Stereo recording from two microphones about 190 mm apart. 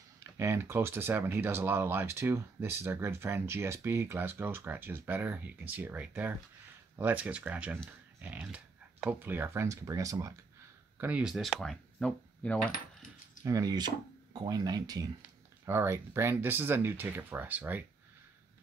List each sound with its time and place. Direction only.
0.4 s speech: 15° right (ahead or behind)
11.0 s speech: 5° right (ahead or behind)
13.4 s speech: 20° right (ahead or behind)